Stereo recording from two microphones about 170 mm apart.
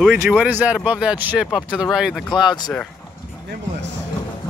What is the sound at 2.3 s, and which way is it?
Speech, 25° left (ahead or behind).